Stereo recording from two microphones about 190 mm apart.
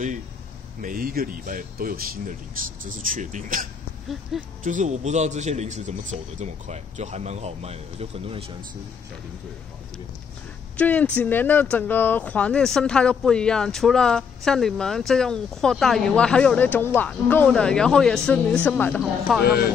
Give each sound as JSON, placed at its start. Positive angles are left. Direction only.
{"t": 0.7, "sound": "speech", "side_deg": -45}
{"t": 4.1, "sound": "speech", "side_deg": 0}
{"t": 4.6, "sound": "a man's voice", "side_deg": -40}
{"t": 10.8, "sound": "speech", "side_deg": 5}
{"t": 19.4, "sound": "speech", "side_deg": 55}